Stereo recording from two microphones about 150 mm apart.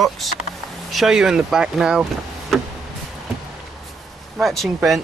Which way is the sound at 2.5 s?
Centre (ahead or behind).